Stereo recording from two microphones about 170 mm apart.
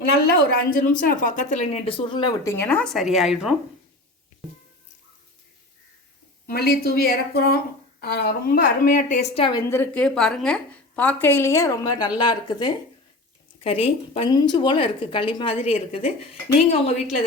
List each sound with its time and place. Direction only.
0.1 s a woman's voice: 65° left (ahead or behind); by 3.5 s 5° right (ahead or behind)
6.5 s a woman's voice: 65° left (ahead or behind); by 17.2 s 40° left (ahead or behind)